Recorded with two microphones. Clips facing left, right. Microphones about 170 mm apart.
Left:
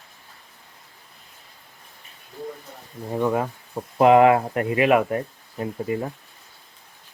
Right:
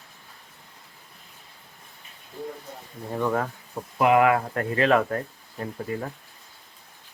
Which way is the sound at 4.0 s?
30° left (ahead or behind).